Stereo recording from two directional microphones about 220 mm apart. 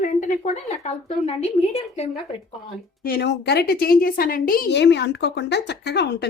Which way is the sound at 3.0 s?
45° left (ahead or behind).